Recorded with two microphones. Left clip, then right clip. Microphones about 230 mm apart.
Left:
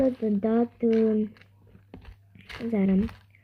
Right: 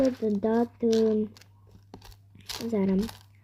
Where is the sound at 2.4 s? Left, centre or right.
Centre.